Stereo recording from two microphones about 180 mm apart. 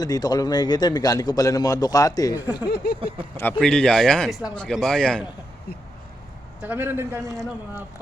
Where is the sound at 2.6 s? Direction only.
65° left (ahead or behind).